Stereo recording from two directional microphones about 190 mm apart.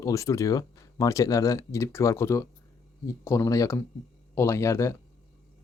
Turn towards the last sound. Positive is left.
turn(degrees=15)  # may be behind; listen again after turning